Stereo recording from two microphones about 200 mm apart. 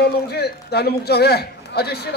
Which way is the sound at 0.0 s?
55° left (ahead or behind).